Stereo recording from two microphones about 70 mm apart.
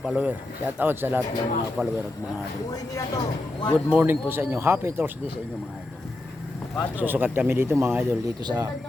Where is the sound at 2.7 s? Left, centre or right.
Left.